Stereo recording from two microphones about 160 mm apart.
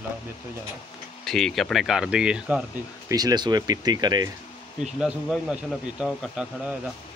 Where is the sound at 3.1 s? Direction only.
25° right (ahead or behind).